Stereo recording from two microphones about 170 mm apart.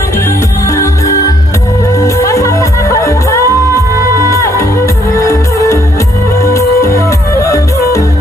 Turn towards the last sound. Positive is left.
turn(degrees=15)  # may be behind; listen again after turning